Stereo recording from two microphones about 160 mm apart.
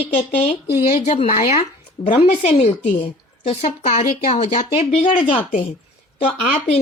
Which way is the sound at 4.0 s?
50° left (ahead or behind).